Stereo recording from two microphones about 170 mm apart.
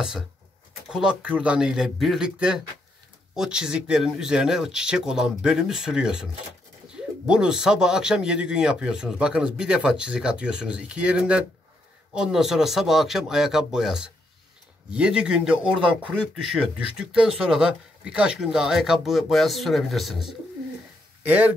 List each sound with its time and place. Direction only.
0.8 s speech: 5° right (ahead or behind)